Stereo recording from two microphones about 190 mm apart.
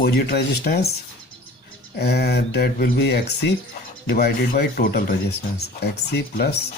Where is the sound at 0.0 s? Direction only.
55° left (ahead or behind).